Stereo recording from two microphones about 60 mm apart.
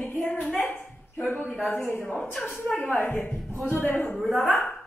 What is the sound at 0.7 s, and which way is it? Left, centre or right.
Speech, left.